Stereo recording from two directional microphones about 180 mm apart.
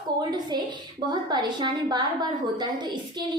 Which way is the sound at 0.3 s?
25° right (ahead or behind).